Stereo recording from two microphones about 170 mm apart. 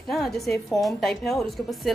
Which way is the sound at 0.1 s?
Centre (ahead or behind).